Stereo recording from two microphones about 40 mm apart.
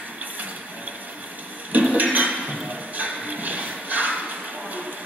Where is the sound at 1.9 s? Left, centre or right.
Right.